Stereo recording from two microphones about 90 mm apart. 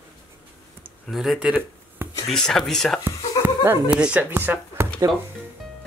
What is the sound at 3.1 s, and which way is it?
Chuckle, 25° right (ahead or behind).